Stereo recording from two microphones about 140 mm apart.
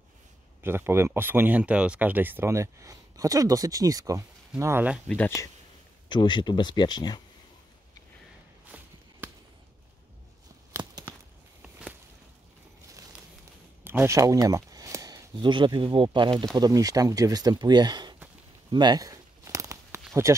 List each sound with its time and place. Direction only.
0.6 s speech: 15° right (ahead or behind)
5.0 s speech: 10° left (ahead or behind)
6.0 s speech: 35° left (ahead or behind)
8.7 s a sound: 10° right (ahead or behind)
13.8 s a sound: 15° right (ahead or behind)
15.3 s speech: 35° right (ahead or behind)
18.7 s tearing: 30° right (ahead or behind)
20.2 s speech: 20° right (ahead or behind)